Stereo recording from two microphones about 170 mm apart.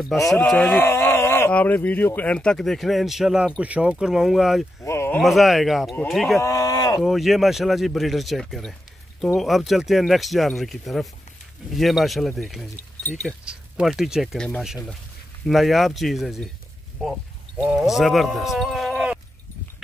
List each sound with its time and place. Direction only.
0.0 s speech: centre (ahead or behind)
4.8 s a sound: 15° left (ahead or behind)
5.2 s speech: centre (ahead or behind)
6.4 s a sound: 20° left (ahead or behind)
7.0 s speech: centre (ahead or behind)
17.6 s speech: 5° right (ahead or behind)